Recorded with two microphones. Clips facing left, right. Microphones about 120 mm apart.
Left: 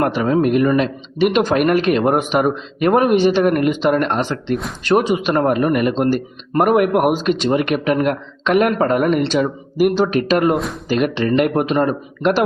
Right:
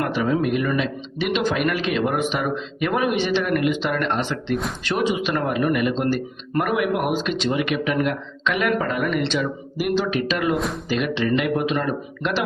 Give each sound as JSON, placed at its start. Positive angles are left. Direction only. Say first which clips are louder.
{"t": 0.0, "sound": "a man's voice", "louder": "left 5 dB", "side_deg": 50}
{"t": 10.5, "sound": "speech", "louder": "left 4 dB", "side_deg": 0}
{"t": 10.8, "sound": "a man's voice", "louder": "left 6 dB", "side_deg": 50}